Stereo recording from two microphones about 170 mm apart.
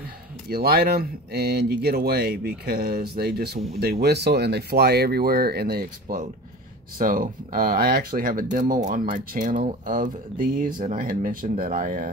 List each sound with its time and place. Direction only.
0.5 s speech: 65° right (ahead or behind); by 12.1 s 50° right (ahead or behind)